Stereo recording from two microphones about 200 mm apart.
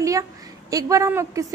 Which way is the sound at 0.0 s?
15° right (ahead or behind).